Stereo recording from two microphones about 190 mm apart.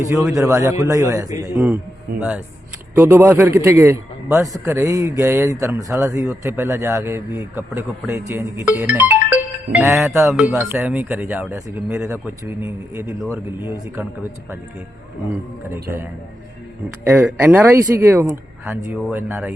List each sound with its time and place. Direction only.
0.3 s a man's voice: 15° right (ahead or behind)
2.9 s a man's voice: 10° right (ahead or behind)
15.7 s a man's voice: 10° right (ahead or behind)